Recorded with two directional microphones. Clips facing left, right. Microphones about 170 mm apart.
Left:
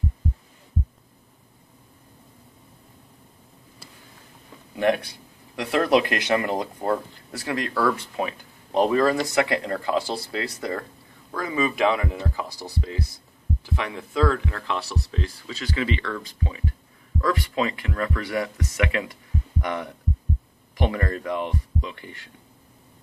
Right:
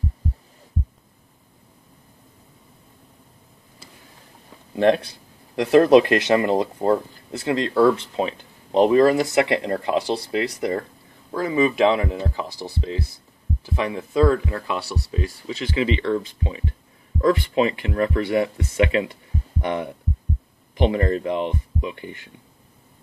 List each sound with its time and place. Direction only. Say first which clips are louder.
4.7 s speech: right 4 dB; 30° right (ahead or behind)